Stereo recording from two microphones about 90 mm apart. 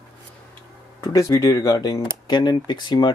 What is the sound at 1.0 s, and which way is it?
Speech, 35° left (ahead or behind).